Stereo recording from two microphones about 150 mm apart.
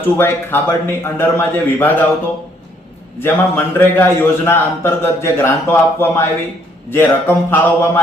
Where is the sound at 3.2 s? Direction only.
15° left (ahead or behind).